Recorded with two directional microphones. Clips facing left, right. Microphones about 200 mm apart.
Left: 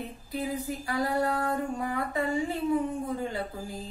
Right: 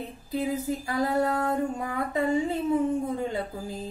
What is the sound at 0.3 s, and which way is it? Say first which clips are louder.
Speech: right 4 dB; 20° right (ahead or behind).